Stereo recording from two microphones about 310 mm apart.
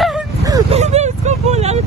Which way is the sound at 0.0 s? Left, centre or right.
Centre.